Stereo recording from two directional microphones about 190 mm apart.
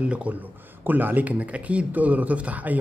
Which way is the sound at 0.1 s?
5° right (ahead or behind).